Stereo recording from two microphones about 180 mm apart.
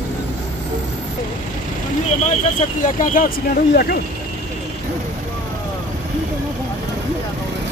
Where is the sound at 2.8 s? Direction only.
45° left (ahead or behind).